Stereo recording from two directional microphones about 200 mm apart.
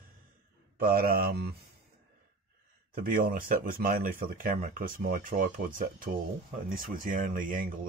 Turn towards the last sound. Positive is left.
turn(degrees=-40)  # may be behind; listen again after turning